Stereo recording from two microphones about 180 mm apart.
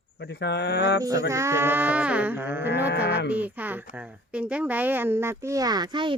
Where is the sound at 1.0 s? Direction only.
20° right (ahead or behind).